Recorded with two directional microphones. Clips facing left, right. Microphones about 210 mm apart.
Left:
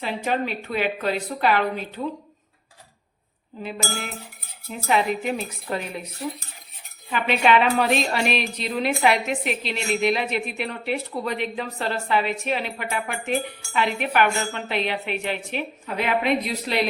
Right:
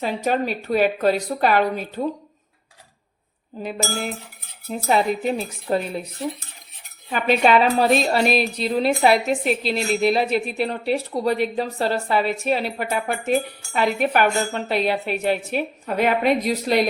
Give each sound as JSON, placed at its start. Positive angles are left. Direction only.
{"t": 0.0, "sound": "speech", "side_deg": -40}
{"t": 3.6, "sound": "speech", "side_deg": -40}
{"t": 7.1, "sound": "speech", "side_deg": -40}